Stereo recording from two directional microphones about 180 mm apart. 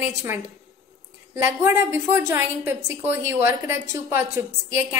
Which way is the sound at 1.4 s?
15° right (ahead or behind).